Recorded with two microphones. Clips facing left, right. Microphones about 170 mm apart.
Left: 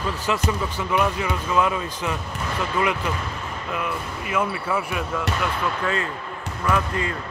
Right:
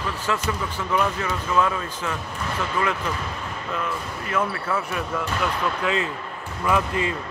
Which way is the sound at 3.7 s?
10° left (ahead or behind).